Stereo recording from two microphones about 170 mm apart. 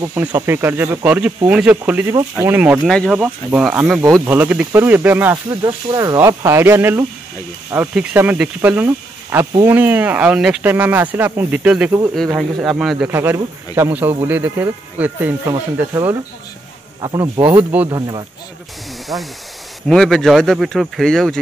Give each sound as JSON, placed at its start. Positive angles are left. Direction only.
{"t": 0.1, "sound": "speech", "side_deg": -10}
{"t": 2.9, "sound": "speech", "side_deg": 5}
{"t": 3.2, "sound": "speech", "side_deg": -5}
{"t": 4.0, "sound": "speech", "side_deg": -15}
{"t": 13.1, "sound": "speech", "side_deg": -15}
{"t": 17.6, "sound": "speech", "side_deg": -10}
{"t": 17.8, "sound": "speech", "side_deg": -25}
{"t": 19.9, "sound": "speech", "side_deg": 0}